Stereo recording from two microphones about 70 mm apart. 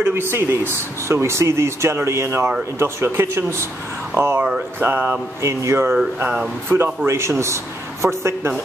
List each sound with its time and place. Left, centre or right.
0.3 s speech: right
5.4 s a man's voice: right